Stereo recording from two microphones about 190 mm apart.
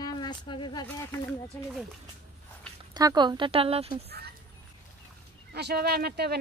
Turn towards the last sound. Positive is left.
turn(degrees=-55)  # may be behind; listen again after turning